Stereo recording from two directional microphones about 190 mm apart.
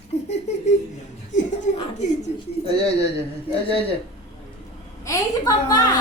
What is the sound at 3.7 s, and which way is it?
Speech, 30° left (ahead or behind).